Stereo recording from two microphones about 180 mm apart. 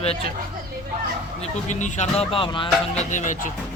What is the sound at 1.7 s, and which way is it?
Speech, 40° left (ahead or behind).